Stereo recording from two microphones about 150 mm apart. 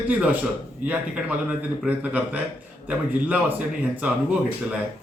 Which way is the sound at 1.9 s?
10° right (ahead or behind).